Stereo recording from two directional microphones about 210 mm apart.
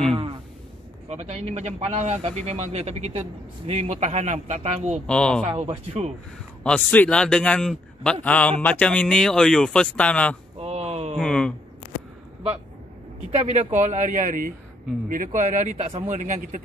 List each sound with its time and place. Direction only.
1.0 s speech: 30° right (ahead or behind)
5.0 s a man's voice: 5° left (ahead or behind)
5.5 s speech: 30° right (ahead or behind)
6.6 s a man's voice: 5° left (ahead or behind)
10.6 s a sound: 30° right (ahead or behind)
11.1 s a man's voice: 5° left (ahead or behind)
13.3 s speech: 35° right (ahead or behind)